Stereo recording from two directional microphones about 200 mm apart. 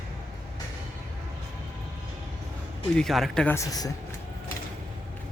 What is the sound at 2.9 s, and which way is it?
Speech, centre (ahead or behind).